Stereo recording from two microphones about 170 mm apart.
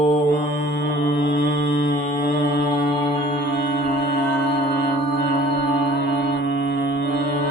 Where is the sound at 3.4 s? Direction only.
70° left (ahead or behind).